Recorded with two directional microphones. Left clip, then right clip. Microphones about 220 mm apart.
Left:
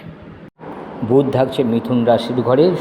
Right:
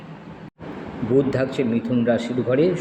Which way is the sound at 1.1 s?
15° left (ahead or behind).